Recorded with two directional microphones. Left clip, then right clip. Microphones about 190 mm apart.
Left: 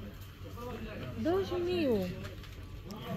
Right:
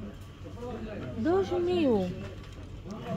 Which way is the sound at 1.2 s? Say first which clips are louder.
Right 5 dB; 30° right (ahead or behind).